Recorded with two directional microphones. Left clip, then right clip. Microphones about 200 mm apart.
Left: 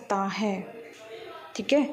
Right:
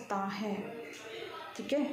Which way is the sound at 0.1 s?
40° left (ahead or behind).